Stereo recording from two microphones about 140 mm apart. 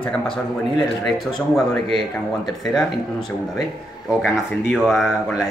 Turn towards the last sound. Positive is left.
turn(degrees=-5)  # may be behind; listen again after turning